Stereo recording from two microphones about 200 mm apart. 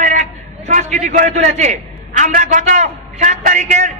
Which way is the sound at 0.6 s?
40° right (ahead or behind).